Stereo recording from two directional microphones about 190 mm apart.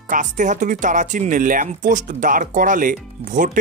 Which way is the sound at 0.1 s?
40° right (ahead or behind).